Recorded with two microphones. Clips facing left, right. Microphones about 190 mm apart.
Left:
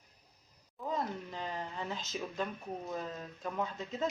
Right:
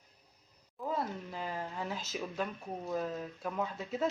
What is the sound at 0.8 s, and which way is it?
Speech, 5° right (ahead or behind).